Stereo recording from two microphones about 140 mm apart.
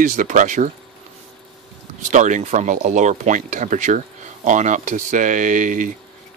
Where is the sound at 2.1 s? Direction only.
60° right (ahead or behind).